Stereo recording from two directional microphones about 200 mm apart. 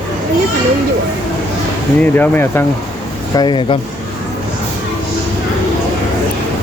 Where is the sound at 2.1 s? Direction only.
10° left (ahead or behind).